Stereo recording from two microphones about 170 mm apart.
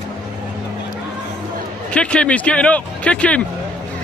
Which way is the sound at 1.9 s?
5° left (ahead or behind).